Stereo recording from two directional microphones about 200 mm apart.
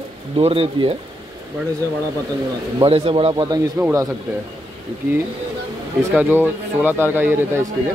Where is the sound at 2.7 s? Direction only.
30° right (ahead or behind).